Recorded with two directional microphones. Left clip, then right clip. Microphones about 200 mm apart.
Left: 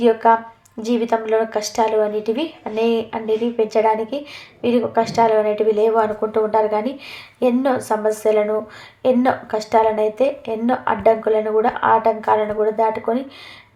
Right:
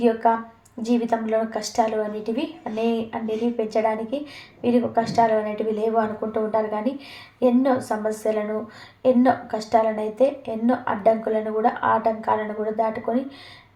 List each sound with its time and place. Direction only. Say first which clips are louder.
0.0 s a woman's voice: left 5 dB; 30° left (ahead or behind)